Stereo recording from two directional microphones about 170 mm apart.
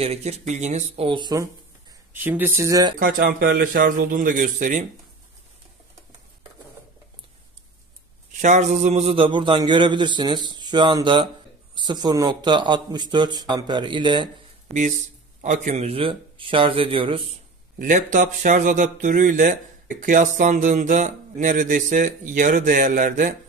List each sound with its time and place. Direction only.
0.0 s speech: 40° right (ahead or behind); by 1.5 s 25° right (ahead or behind)
2.1 s speech: 10° right (ahead or behind)
3.0 s a man's voice: 65° right (ahead or behind)
8.3 s a man's voice: 45° right (ahead or behind); by 14.3 s 30° right (ahead or behind)
15.4 s speech: 45° right (ahead or behind); by 17.2 s 30° right (ahead or behind)
17.7 s speech: 50° right (ahead or behind)